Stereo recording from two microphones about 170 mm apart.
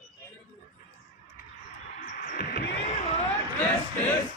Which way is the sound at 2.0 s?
50° left (ahead or behind).